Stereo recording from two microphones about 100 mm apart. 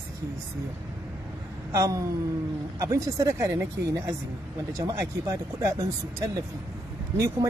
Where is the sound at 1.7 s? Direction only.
35° right (ahead or behind).